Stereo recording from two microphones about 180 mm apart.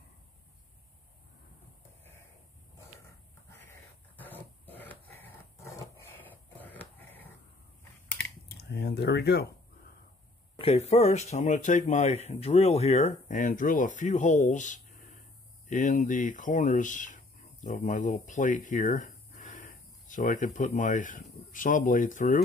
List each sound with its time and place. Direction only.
3.4 s a sound: 10° left (ahead or behind)
8.5 s speech: 65° left (ahead or behind)
10.6 s speech: 35° left (ahead or behind)